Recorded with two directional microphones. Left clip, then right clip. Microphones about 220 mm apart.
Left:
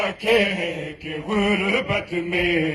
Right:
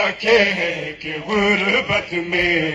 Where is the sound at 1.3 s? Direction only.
35° left (ahead or behind).